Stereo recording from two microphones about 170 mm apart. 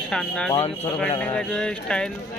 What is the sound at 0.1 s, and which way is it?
Speech, 5° left (ahead or behind).